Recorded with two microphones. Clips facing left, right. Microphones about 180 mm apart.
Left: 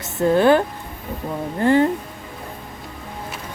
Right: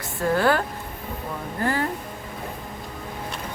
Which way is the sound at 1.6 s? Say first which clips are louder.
Left 9 dB; 25° left (ahead or behind).